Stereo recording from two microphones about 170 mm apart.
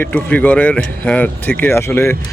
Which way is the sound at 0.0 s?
10° left (ahead or behind).